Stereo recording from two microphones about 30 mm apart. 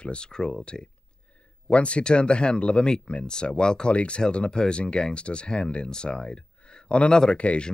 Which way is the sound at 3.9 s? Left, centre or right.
Left.